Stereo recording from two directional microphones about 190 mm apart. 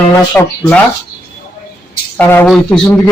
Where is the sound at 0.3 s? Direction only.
5° left (ahead or behind).